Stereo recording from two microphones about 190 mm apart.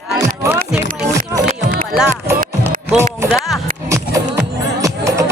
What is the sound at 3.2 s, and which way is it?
Music, 5° right (ahead or behind).